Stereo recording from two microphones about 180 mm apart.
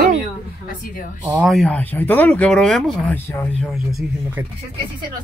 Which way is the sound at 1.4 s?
Centre (ahead or behind).